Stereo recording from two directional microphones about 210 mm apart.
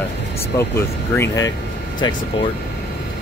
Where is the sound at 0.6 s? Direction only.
10° left (ahead or behind).